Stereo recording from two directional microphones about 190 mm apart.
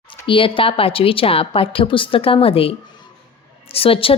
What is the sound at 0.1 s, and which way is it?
A woman's voice, 25° left (ahead or behind).